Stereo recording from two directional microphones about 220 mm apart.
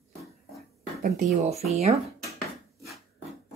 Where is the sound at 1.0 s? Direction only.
30° right (ahead or behind).